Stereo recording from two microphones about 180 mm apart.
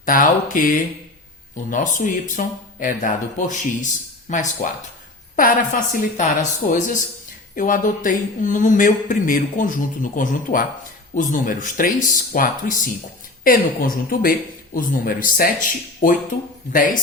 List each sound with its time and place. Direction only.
0.0 s speech: 50° left (ahead or behind)